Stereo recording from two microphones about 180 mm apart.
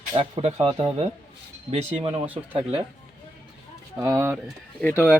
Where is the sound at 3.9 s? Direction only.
15° right (ahead or behind).